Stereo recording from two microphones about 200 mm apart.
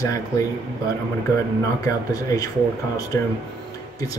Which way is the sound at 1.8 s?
15° left (ahead or behind).